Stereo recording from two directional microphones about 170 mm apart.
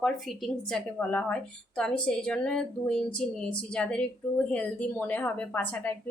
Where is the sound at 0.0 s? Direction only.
Centre (ahead or behind).